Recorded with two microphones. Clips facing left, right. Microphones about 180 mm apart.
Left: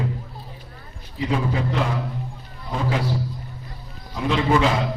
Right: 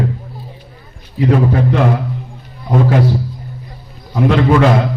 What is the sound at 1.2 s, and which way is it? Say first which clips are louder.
A man's voice: right 10 dB; 60° right (ahead or behind).